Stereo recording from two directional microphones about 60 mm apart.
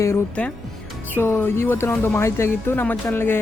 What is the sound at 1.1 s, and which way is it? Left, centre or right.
Speech, left.